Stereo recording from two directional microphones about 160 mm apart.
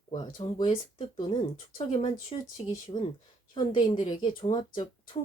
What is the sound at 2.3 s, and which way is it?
Speech, 25° left (ahead or behind).